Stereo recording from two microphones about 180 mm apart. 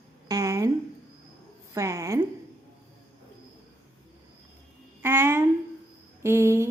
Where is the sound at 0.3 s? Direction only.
15° right (ahead or behind).